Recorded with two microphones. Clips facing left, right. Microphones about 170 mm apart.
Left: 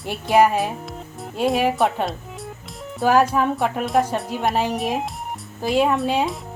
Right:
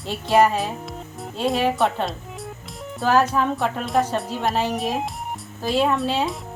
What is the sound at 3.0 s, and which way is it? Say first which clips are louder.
A woman's voice: left 2 dB; 10° left (ahead or behind).